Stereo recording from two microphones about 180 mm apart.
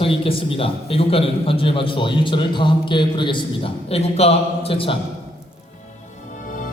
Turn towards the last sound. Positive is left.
turn(degrees=30)  # may be behind; listen again after turning